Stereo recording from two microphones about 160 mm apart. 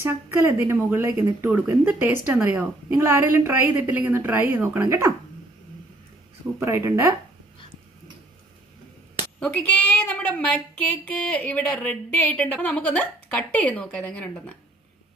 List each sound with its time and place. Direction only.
0.0 s a woman's voice: 15° right (ahead or behind)
6.6 s speech: 20° right (ahead or behind)
9.4 s speech: 5° left (ahead or behind)